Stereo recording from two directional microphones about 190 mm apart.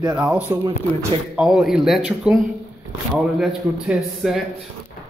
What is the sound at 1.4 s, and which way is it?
A man's voice, 5° right (ahead or behind).